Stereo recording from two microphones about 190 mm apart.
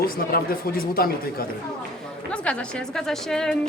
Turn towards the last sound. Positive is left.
turn(degrees=5)  # may be behind; listen again after turning